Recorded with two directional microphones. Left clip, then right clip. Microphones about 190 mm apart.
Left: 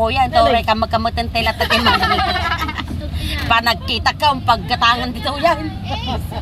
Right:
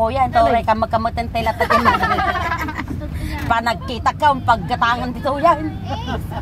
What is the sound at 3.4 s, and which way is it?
Speech, 20° right (ahead or behind).